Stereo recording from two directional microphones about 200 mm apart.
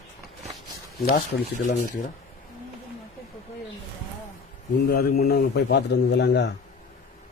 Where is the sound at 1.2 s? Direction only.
40° left (ahead or behind).